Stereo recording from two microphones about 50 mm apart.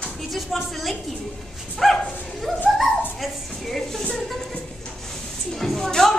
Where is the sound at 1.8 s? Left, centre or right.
Centre.